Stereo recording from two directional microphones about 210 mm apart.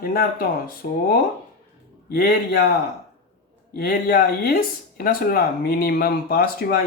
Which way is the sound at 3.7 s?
45° left (ahead or behind).